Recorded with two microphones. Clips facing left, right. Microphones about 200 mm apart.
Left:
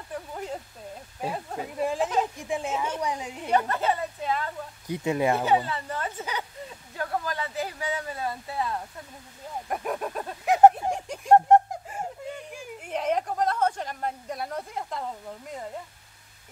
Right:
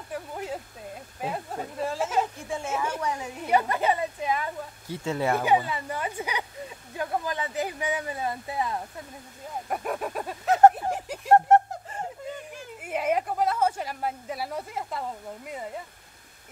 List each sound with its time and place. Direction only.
0.1 s speech: 5° right (ahead or behind)
1.8 s speech: 15° left (ahead or behind)
3.4 s speech: 10° right (ahead or behind)
4.8 s speech: 15° left (ahead or behind)
5.4 s speech: 15° right (ahead or behind)
9.7 s speech: centre (ahead or behind)
10.4 s speech: 15° left (ahead or behind)
10.9 s a sound: 5° right (ahead or behind)
11.3 s a sound: 15° left (ahead or behind)
12.8 s speech: 5° right (ahead or behind)